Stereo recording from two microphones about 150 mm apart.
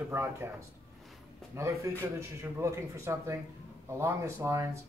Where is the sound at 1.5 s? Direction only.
20° right (ahead or behind).